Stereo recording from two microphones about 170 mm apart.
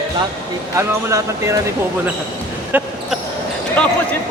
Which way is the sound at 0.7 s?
15° right (ahead or behind).